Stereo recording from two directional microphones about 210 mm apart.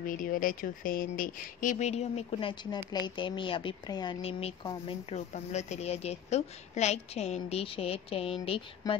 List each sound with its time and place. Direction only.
0.0 s a woman's voice: 40° left (ahead or behind)